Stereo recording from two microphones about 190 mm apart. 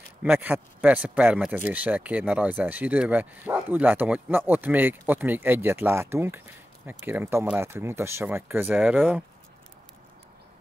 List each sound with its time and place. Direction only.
0.2 s a man's voice: 10° right (ahead or behind)